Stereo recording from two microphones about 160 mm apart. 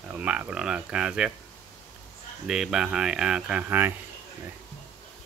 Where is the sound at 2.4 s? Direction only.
5° right (ahead or behind).